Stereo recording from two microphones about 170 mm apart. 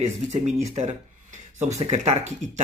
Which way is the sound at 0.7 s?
40° right (ahead or behind).